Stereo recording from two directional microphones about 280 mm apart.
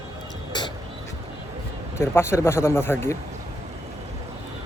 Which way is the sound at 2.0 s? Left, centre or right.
Centre.